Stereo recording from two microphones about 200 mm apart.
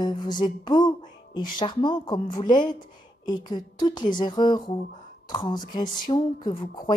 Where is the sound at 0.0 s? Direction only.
25° left (ahead or behind).